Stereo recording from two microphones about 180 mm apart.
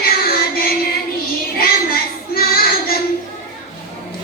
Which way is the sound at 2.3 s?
55° left (ahead or behind).